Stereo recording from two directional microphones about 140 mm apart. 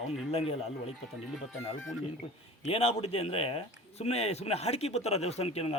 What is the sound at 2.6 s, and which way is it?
Speech, 45° left (ahead or behind).